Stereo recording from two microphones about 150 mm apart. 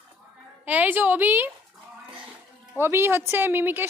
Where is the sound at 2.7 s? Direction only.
15° right (ahead or behind).